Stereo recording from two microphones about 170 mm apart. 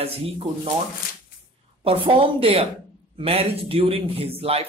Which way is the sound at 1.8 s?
35° right (ahead or behind).